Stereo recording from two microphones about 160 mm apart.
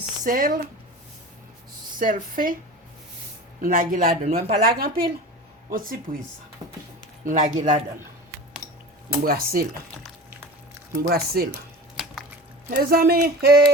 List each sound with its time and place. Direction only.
0.3 s speech: 60° right (ahead or behind)
2.0 s speech: 60° right (ahead or behind)
3.6 s speech: 60° right (ahead or behind); by 4.5 s 45° right (ahead or behind)
4.6 s speech: 65° right (ahead or behind)
6.6 s speech: 25° right (ahead or behind)
7.3 s speech: 55° right (ahead or behind)
9.2 s speech: 70° right (ahead or behind)
10.9 s speech: 75° right (ahead or behind)
12.7 s speech: 65° right (ahead or behind)